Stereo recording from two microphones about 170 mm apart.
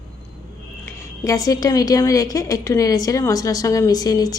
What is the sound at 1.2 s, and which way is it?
A woman's voice, 20° left (ahead or behind).